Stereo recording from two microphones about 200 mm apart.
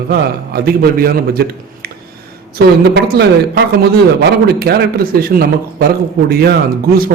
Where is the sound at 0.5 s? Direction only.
50° right (ahead or behind).